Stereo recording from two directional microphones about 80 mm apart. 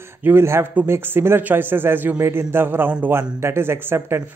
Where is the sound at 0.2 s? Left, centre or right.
Right.